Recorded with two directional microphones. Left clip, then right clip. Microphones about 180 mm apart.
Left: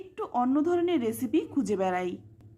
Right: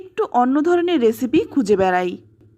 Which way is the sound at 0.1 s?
30° right (ahead or behind).